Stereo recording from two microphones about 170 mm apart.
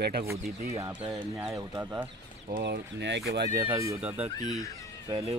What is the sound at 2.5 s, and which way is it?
Speech, 75° right (ahead or behind).